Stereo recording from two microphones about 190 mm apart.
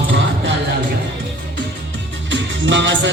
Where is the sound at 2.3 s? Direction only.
75° right (ahead or behind).